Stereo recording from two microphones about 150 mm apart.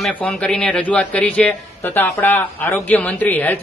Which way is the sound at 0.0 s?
10° left (ahead or behind).